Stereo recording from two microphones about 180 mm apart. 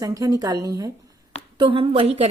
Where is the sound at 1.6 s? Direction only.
30° right (ahead or behind).